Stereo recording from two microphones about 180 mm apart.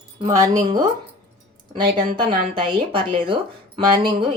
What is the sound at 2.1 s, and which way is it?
Speech, 30° right (ahead or behind).